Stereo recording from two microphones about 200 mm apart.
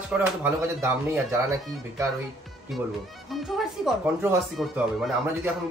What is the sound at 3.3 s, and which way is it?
Speech, centre (ahead or behind).